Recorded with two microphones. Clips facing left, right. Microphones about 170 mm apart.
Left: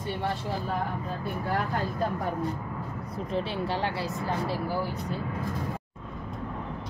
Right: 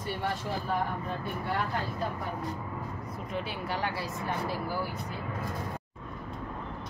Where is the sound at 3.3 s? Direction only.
30° left (ahead or behind).